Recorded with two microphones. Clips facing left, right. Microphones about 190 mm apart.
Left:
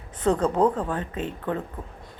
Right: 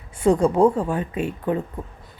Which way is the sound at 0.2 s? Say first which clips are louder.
Right 5 dB; 10° right (ahead or behind).